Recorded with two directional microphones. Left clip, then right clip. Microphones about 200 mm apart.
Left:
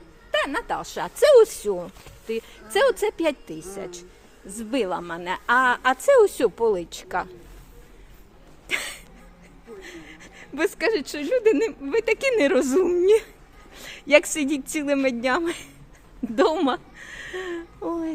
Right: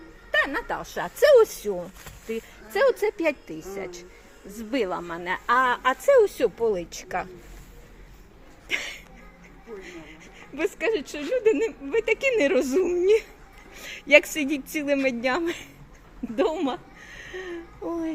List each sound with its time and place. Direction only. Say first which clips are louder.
0.3 s a man's voice: even; 15° left (ahead or behind)
4.5 s a woman's voice: left 2 dB; 15° left (ahead or behind)
8.6 s hiccup: left 1 dB; 15° left (ahead or behind)
9.8 s a sound: left 1 dB; 20° left (ahead or behind)
11.1 s a woman's voice: left 2 dB; 30° left (ahead or behind); by 15.7 s 10° left (ahead or behind)
16.3 s a sound: left 4 dB; 30° left (ahead or behind)